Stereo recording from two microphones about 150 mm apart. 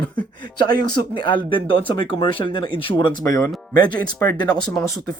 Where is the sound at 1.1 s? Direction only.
35° left (ahead or behind).